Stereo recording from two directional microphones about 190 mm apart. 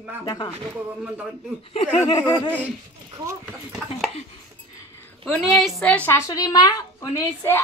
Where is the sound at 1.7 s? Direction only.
35° left (ahead or behind).